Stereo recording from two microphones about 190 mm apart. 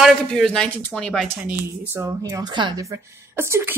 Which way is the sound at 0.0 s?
5° left (ahead or behind).